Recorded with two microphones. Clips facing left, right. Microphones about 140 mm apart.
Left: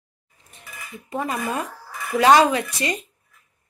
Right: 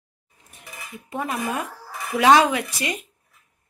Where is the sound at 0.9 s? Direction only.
Centre (ahead or behind).